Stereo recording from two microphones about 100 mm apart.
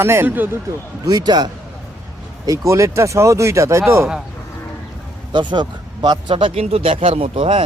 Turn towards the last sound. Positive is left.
turn(degrees=-70)  # may be behind; listen again after turning